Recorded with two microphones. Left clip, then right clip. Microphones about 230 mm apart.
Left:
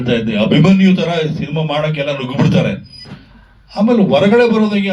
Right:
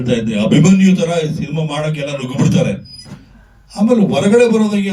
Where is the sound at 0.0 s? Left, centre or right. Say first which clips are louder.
Left 1 dB; left.